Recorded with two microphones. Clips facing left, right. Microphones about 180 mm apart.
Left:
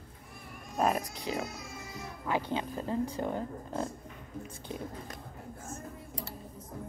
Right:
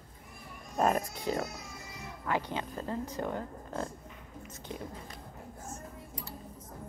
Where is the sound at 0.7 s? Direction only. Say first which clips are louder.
Right 1 dB; 5° left (ahead or behind).